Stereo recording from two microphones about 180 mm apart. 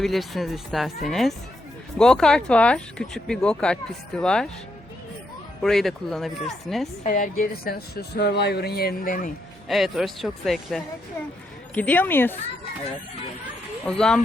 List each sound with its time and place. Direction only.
0.0 s speech: centre (ahead or behind)
5.6 s speech: centre (ahead or behind)
7.0 s speech: 45° left (ahead or behind)
9.6 s a woman's voice: centre (ahead or behind)
13.8 s speech: 5° left (ahead or behind)